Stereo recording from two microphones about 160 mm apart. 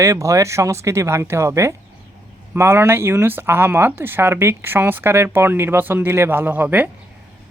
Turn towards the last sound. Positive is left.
turn(degrees=-10)  # may be behind; listen again after turning